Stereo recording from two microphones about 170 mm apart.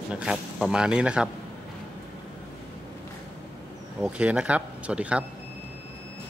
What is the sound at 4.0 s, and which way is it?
Speech, 5° right (ahead or behind).